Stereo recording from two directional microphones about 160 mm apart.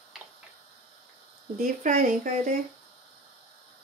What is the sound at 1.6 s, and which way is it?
Speech, 60° right (ahead or behind).